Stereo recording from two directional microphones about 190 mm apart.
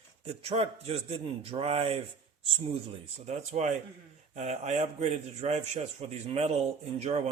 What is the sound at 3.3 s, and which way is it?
A man's voice, 35° right (ahead or behind).